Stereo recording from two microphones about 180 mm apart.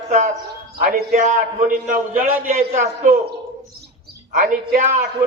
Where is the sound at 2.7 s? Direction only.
40° right (ahead or behind).